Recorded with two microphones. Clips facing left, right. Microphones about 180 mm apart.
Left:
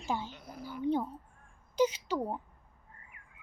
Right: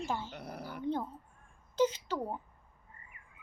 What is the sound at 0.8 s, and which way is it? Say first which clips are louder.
A child's voice: left 4 dB; 10° left (ahead or behind).